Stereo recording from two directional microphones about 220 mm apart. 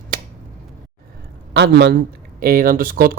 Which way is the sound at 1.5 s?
50° right (ahead or behind).